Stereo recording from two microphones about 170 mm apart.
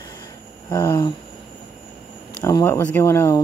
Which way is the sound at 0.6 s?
25° left (ahead or behind).